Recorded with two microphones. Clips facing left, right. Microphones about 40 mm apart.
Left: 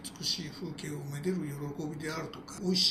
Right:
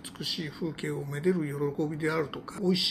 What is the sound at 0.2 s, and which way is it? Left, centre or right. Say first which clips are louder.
Speech: right 5 dB; right.